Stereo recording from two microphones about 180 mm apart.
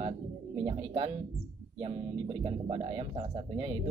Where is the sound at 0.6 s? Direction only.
25° right (ahead or behind).